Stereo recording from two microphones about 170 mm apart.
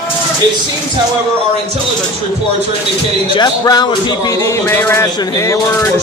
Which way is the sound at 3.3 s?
25° left (ahead or behind).